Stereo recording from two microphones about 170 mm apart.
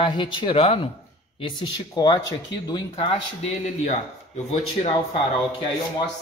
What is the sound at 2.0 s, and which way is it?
Speech, 25° left (ahead or behind).